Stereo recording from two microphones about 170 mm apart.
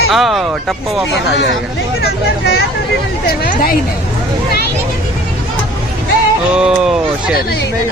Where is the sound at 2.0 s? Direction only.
65° left (ahead or behind).